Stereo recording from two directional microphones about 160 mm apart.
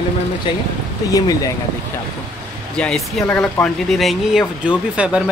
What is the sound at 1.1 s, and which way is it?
Speech, 20° left (ahead or behind).